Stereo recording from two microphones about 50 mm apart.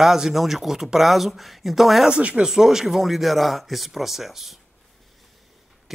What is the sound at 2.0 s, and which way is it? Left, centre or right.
Speech, right.